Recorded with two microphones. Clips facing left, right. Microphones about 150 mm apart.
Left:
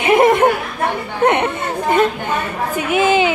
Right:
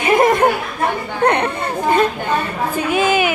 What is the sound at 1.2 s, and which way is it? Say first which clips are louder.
Chatter: left 1 dB; 20° left (ahead or behind).